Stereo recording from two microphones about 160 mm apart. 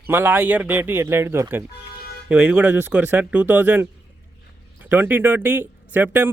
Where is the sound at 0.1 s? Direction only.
10° right (ahead or behind).